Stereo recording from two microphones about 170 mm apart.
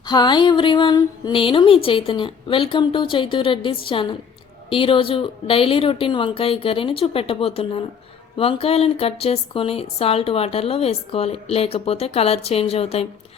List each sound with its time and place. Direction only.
0.1 s a woman's voice: 25° left (ahead or behind)